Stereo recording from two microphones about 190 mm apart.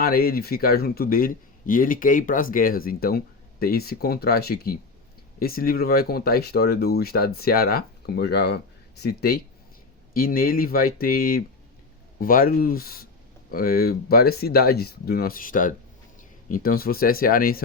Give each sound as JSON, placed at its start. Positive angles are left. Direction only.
{"t": 0.0, "sound": "speech", "side_deg": 50}